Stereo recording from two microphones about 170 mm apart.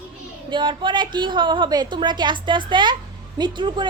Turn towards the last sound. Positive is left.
turn(degrees=-25)  # may be behind; listen again after turning